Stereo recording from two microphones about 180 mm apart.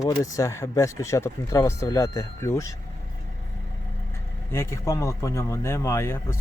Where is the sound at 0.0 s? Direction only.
15° left (ahead or behind).